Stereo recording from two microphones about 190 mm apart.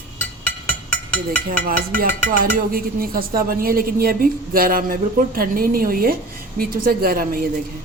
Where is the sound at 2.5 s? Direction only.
50° right (ahead or behind).